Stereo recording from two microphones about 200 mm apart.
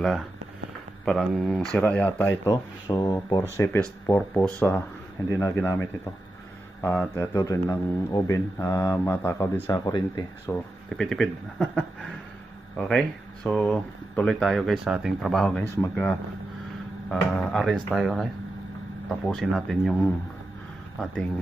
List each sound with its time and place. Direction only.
1.0 s speech: centre (ahead or behind)
2.4 s speech: 20° left (ahead or behind)
10.4 s speech: 5° left (ahead or behind)